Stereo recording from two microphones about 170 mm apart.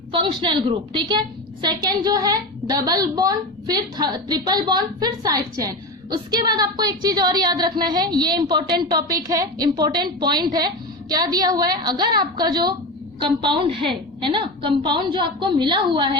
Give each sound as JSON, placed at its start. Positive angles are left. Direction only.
{"t": 0.1, "sound": "a woman's voice", "side_deg": -30}